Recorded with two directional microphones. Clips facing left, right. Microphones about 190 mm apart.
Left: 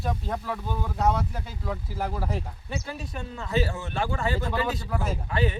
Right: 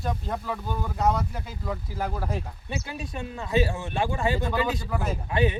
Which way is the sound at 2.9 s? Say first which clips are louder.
Right 2 dB; 15° right (ahead or behind).